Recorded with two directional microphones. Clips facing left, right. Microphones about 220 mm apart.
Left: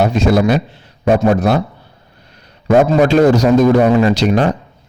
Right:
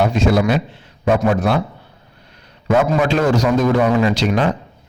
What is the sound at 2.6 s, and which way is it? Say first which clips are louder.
A man's voice: left 5 dB; 40° left (ahead or behind).